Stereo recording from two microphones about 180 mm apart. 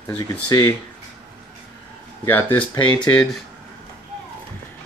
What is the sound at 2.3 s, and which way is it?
Speech, 10° left (ahead or behind).